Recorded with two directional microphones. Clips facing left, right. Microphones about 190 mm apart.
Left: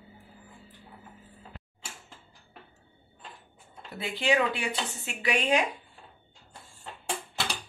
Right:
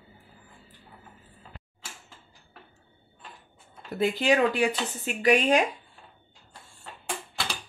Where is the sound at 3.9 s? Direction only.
45° right (ahead or behind).